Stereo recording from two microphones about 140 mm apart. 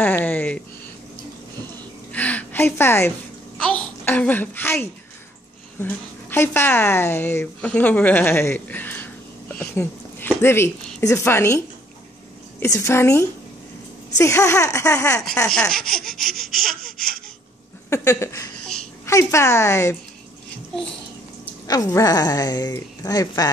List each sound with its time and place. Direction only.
0.0 s a sound: 10° left (ahead or behind)
2.1 s a sound: 10° left (ahead or behind)
3.5 s a child's voice: 10° left (ahead or behind)
15.4 s speech: 5° left (ahead or behind)
17.8 s a woman's voice: 20° left (ahead or behind)
21.6 s a woman's voice: 25° left (ahead or behind)